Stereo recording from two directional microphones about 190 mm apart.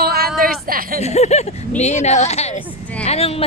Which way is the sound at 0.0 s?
55° right (ahead or behind).